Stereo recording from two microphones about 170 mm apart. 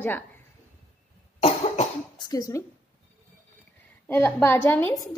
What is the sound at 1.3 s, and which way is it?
Cough, 35° left (ahead or behind).